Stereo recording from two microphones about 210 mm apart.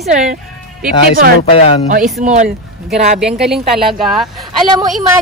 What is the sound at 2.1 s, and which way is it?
Speech, 35° right (ahead or behind).